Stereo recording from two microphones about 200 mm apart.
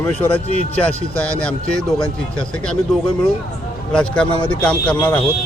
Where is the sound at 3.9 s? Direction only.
5° left (ahead or behind).